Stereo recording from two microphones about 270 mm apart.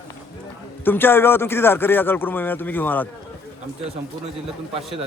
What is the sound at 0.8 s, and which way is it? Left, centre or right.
A man's voice, centre.